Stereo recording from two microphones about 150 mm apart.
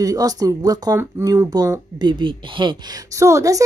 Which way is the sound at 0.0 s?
25° right (ahead or behind).